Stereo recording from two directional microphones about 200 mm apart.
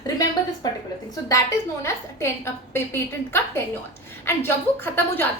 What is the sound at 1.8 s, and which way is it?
A woman's voice, 10° left (ahead or behind).